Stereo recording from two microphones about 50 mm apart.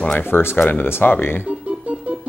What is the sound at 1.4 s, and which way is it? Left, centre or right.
Music, right.